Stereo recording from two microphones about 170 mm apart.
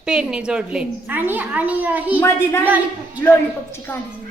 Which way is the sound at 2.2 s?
15° left (ahead or behind).